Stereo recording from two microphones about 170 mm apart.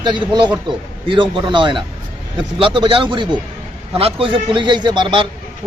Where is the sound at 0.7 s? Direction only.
25° right (ahead or behind).